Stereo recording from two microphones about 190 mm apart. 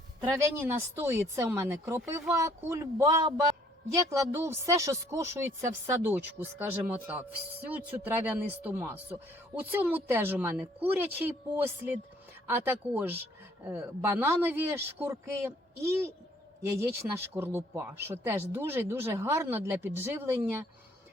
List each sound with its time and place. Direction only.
0.2 s speech: 10° right (ahead or behind)